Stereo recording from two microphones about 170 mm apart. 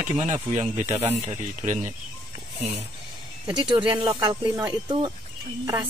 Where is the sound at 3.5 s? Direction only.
25° right (ahead or behind).